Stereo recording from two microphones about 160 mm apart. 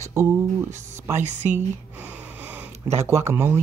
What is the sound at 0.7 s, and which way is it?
Speech, 50° right (ahead or behind).